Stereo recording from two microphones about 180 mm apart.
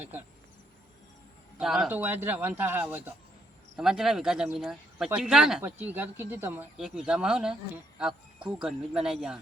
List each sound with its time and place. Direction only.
1.5 s speech: 5° right (ahead or behind)
3.8 s speech: 5° right (ahead or behind)